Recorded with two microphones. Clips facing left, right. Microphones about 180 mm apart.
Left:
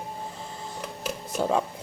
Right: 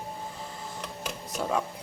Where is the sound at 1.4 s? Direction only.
25° left (ahead or behind).